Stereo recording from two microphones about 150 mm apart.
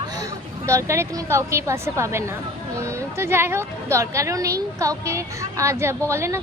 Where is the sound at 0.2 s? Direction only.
20° right (ahead or behind).